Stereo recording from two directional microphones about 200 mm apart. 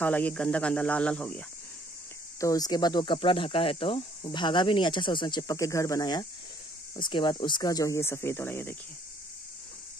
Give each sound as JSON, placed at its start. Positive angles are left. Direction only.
{"t": 0.0, "sound": "speech", "side_deg": 10}
{"t": 2.4, "sound": "speech", "side_deg": 20}